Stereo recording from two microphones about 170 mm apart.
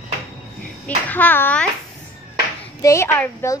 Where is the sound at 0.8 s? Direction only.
10° left (ahead or behind).